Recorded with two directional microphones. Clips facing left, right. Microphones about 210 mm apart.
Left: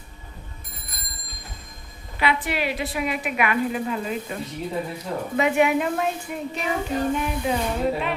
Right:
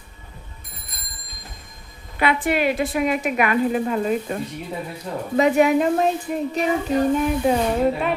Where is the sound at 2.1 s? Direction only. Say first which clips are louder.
Right 4 dB; 50° right (ahead or behind).